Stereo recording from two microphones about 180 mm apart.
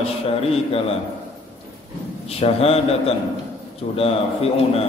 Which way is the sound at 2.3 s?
35° left (ahead or behind).